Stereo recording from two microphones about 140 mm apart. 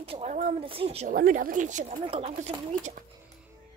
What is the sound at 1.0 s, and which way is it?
Speech, 80° right.